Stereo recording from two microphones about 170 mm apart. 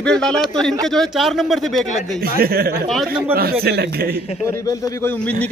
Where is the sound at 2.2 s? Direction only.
60° right (ahead or behind).